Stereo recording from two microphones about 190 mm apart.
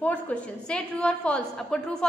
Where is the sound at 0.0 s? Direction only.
5° left (ahead or behind).